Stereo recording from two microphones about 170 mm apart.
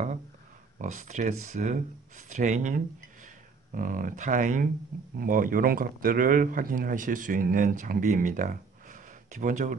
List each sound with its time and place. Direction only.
0.7 s speech: 45° right (ahead or behind)